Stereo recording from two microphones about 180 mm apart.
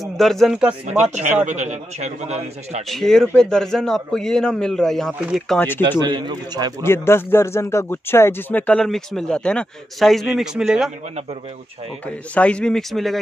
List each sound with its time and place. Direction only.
0.0 s speech: centre (ahead or behind)
0.8 s a man's voice: 40° right (ahead or behind)
2.9 s speech: centre (ahead or behind)
5.9 s speech: 25° right (ahead or behind)
6.8 s speech: 15° left (ahead or behind); by 10.9 s 5° right (ahead or behind)
12.1 s speech: 5° left (ahead or behind)